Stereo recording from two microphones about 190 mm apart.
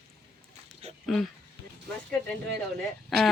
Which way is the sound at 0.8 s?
35° right (ahead or behind).